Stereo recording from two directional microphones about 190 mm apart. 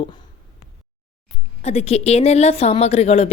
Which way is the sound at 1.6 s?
35° left (ahead or behind).